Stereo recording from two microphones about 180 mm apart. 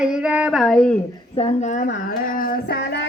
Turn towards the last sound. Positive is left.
turn(degrees=60)  # may be behind; listen again after turning